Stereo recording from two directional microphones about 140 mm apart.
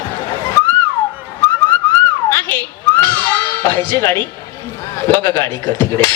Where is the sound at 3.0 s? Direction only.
15° left (ahead or behind).